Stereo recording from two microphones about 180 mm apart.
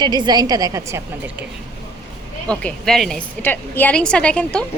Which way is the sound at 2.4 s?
5° left (ahead or behind).